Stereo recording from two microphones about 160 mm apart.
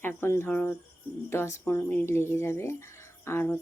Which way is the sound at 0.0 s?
15° left (ahead or behind).